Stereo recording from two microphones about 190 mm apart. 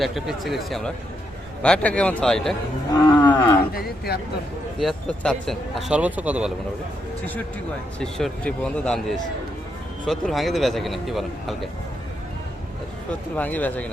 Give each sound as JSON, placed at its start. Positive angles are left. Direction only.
{"t": 0.0, "sound": "speech", "side_deg": 0}
{"t": 3.2, "sound": "cattle", "side_deg": 10}
{"t": 3.7, "sound": "speech", "side_deg": 55}
{"t": 4.8, "sound": "speech", "side_deg": 0}
{"t": 7.9, "sound": "speech", "side_deg": 5}
{"t": 13.3, "sound": "speech", "side_deg": 10}